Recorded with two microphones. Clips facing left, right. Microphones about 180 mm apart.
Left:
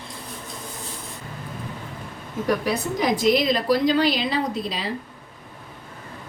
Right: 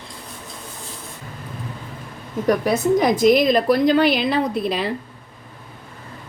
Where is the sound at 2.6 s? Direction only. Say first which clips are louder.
Right 6 dB; 50° right (ahead or behind).